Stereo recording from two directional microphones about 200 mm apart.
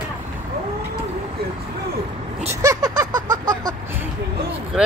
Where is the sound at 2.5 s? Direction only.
15° right (ahead or behind).